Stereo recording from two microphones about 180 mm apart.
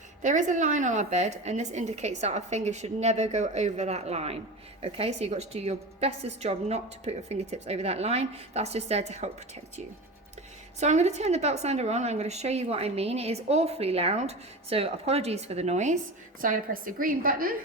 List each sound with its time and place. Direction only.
0.2 s a woman's voice: 45° right (ahead or behind)
10.8 s a woman's voice: 40° right (ahead or behind)